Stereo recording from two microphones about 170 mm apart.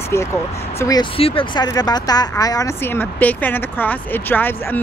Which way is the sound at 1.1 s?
30° left (ahead or behind).